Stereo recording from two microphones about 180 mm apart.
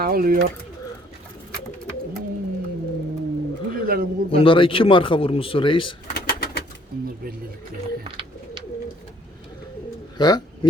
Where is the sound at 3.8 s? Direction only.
55° right (ahead or behind).